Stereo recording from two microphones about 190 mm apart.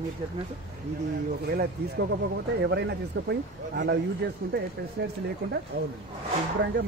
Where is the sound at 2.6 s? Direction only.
65° right (ahead or behind).